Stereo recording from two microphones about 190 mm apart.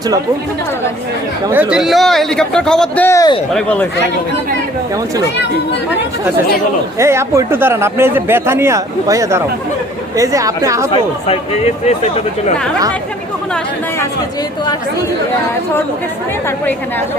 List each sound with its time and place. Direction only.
1.5 s speech: 5° right (ahead or behind)
7.0 s speech: 15° right (ahead or behind)